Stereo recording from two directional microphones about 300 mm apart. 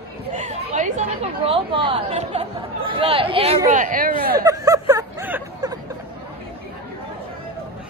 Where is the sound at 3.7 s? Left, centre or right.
Right.